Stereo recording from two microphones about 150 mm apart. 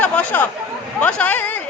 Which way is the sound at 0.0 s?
10° left (ahead or behind).